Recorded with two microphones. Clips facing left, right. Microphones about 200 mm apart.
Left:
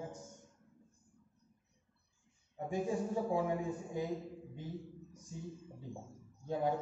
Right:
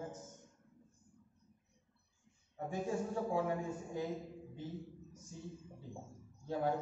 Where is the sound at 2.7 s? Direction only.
15° left (ahead or behind).